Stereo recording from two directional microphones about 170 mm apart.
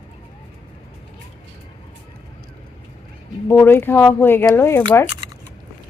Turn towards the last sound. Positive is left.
turn(degrees=15)  # may be behind; listen again after turning